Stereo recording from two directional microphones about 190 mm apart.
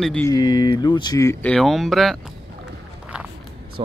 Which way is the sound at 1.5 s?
Centre (ahead or behind).